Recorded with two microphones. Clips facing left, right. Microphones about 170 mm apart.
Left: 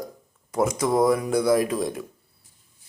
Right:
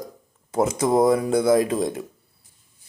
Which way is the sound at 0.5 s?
25° right (ahead or behind).